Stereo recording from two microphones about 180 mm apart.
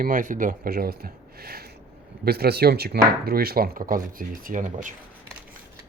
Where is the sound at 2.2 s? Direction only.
60° right (ahead or behind).